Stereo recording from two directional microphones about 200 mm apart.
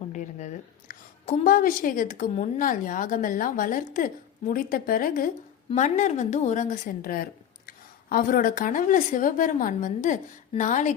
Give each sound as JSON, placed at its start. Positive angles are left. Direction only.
{"t": 0.1, "sound": "a woman's voice", "side_deg": 35}